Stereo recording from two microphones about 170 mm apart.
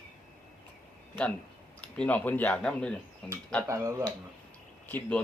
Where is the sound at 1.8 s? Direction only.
10° left (ahead or behind).